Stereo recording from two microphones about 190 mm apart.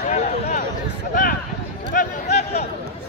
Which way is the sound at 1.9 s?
40° left (ahead or behind).